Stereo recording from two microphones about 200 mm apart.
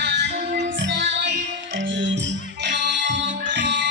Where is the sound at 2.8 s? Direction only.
40° right (ahead or behind).